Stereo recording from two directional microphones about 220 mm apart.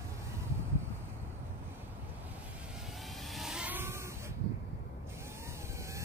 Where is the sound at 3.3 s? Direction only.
Centre (ahead or behind).